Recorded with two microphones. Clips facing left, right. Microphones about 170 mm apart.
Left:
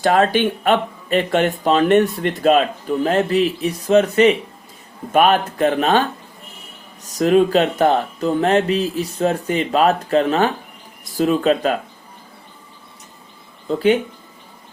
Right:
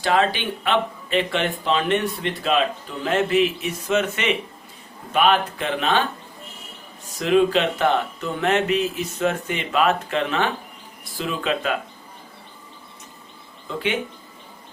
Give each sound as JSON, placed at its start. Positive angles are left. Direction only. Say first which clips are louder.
{"t": 0.0, "sound": "speech", "louder": "left 5 dB", "side_deg": 45}
{"t": 7.1, "sound": "speech", "louder": "left 4 dB", "side_deg": 45}
{"t": 13.7, "sound": "speech", "louder": "left 9 dB", "side_deg": 40}